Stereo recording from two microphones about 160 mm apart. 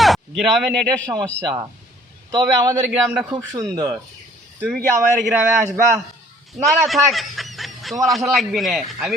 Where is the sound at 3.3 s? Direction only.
25° right (ahead or behind).